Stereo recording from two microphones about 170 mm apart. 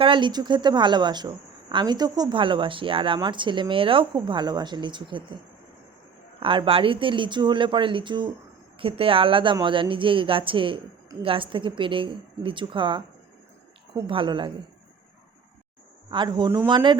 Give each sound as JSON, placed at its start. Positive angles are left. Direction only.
{"t": 0.0, "sound": "a woman's voice", "side_deg": -30}
{"t": 6.4, "sound": "a woman's voice", "side_deg": -30}
{"t": 16.0, "sound": "a woman's voice", "side_deg": -25}